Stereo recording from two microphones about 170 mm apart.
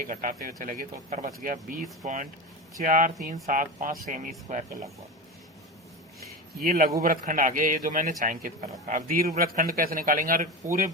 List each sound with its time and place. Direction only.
0.1 s speech: 55° right (ahead or behind)
6.6 s a man's voice: 55° right (ahead or behind)